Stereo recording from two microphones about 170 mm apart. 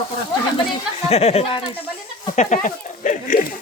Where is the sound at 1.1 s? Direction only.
35° left (ahead or behind).